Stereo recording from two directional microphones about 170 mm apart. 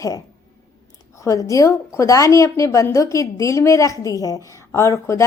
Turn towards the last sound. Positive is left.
turn(degrees=15)  # may be behind; listen again after turning